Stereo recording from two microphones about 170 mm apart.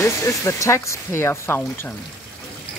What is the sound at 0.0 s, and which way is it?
Speech, 15° left (ahead or behind).